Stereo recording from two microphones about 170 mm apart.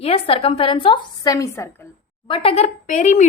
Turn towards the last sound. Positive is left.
turn(degrees=45)  # may be behind; listen again after turning